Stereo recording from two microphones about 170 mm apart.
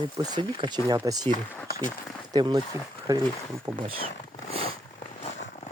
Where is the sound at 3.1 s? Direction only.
15° right (ahead or behind).